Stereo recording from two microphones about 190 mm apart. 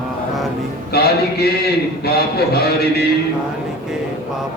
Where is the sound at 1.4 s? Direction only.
55° left (ahead or behind).